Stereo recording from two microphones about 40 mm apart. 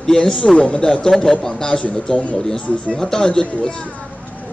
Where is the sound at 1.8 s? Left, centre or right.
Left.